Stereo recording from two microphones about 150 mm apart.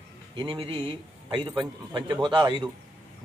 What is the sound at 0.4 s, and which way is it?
A man's voice, 35° right (ahead or behind).